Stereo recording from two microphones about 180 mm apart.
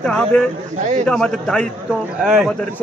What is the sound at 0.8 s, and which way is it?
Speech, 40° right (ahead or behind).